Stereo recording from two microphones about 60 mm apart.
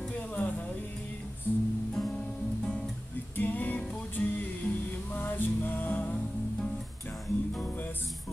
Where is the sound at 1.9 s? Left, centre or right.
Centre.